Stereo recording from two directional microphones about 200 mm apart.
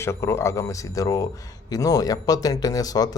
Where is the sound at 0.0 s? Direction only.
15° left (ahead or behind).